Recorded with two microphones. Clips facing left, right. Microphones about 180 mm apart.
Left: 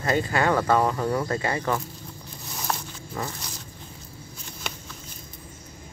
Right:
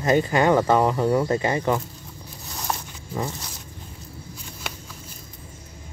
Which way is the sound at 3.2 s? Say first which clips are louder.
Right 4 dB; 15° right (ahead or behind).